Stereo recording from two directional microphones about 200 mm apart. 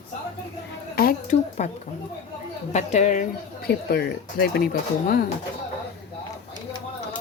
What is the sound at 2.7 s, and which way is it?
Speech, 35° left (ahead or behind).